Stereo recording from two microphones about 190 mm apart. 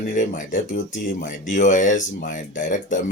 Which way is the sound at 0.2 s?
45° left (ahead or behind).